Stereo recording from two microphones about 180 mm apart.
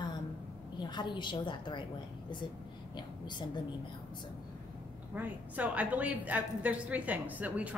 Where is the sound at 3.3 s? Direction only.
25° left (ahead or behind).